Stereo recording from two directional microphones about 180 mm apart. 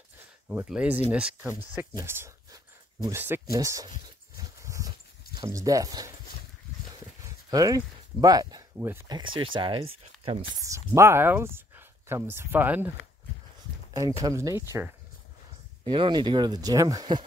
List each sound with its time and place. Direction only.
0.5 s speech: 5° right (ahead or behind)
4.6 s dog: 15° right (ahead or behind)
5.4 s speech: 20° right (ahead or behind)
7.4 s speech: 20° right (ahead or behind)
9.1 s speech: 25° right (ahead or behind)
10.6 s speech: 15° right (ahead or behind)
14.2 s speech: 15° right (ahead or behind)
15.9 s speech: 25° right (ahead or behind)